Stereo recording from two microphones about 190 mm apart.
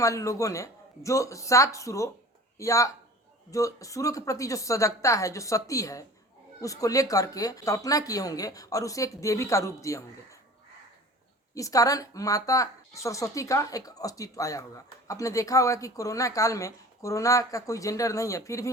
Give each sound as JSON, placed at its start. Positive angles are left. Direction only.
{"t": 0.0, "sound": "speech", "side_deg": 15}
{"t": 11.5, "sound": "speech", "side_deg": 20}